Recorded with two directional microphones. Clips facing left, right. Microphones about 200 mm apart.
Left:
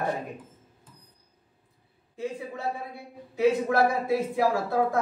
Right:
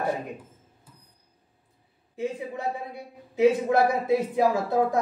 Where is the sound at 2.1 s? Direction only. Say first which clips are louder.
Right 3 dB; 15° right (ahead or behind).